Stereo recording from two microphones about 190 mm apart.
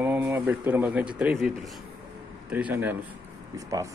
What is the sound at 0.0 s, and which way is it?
Speech, 10° right (ahead or behind).